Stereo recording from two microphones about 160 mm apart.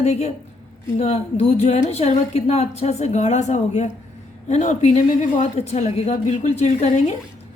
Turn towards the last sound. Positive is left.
turn(degrees=45)  # may be behind; listen again after turning